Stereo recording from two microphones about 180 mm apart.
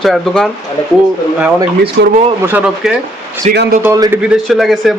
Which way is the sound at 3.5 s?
65° right (ahead or behind).